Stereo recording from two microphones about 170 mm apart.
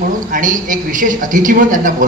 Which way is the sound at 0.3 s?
50° right (ahead or behind).